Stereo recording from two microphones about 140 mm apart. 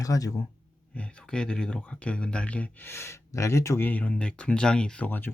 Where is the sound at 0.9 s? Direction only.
10° left (ahead or behind).